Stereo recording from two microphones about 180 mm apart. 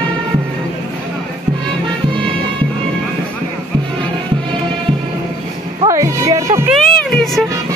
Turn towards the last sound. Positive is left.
turn(degrees=0)  # may be behind; listen again after turning